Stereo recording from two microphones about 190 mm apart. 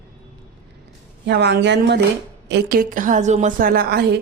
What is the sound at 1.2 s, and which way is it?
A woman's voice, 65° right (ahead or behind).